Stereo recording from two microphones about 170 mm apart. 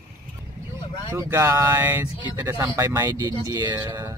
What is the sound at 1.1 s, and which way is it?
Speech, 15° right (ahead or behind).